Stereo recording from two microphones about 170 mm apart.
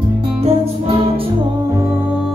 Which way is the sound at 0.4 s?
35° right (ahead or behind).